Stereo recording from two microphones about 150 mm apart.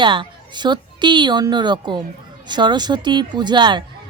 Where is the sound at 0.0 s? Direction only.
35° right (ahead or behind).